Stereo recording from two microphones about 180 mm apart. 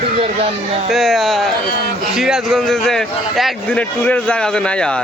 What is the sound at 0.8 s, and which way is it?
A man's voice, centre (ahead or behind).